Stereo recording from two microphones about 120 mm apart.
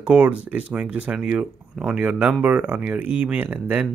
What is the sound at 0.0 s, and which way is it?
Speech, 10° right (ahead or behind).